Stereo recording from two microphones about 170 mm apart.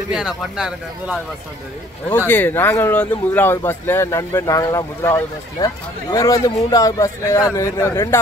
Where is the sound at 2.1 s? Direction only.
10° left (ahead or behind).